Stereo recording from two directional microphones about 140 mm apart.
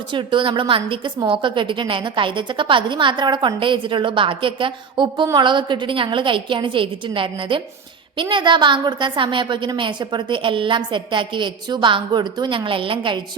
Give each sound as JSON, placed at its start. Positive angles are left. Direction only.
{"t": 0.1, "sound": "a woman's voice", "side_deg": -35}